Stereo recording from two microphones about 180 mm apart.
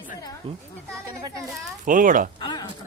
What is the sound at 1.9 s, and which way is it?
Speech, 50° right (ahead or behind).